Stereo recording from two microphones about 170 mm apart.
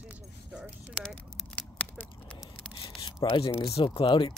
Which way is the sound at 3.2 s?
30° left (ahead or behind).